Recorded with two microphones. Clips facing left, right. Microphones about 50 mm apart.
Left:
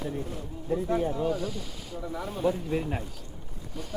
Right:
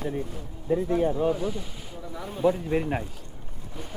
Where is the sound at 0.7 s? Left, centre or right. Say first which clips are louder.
Right 3 dB; right.